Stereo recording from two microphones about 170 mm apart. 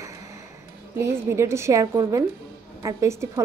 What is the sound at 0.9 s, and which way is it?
A woman's voice, 15° right (ahead or behind).